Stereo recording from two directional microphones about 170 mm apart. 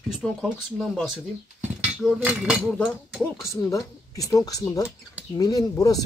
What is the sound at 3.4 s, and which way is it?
Speech, 20° left (ahead or behind).